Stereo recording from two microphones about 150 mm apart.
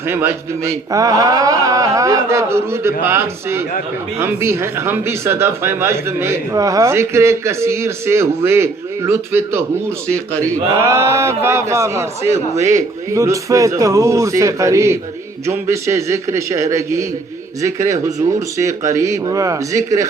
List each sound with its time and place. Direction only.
0.1 s a man's voice: 15° right (ahead or behind)
10.8 s a man's voice: 20° right (ahead or behind)